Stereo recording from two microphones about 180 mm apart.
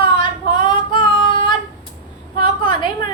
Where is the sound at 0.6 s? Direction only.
25° left (ahead or behind).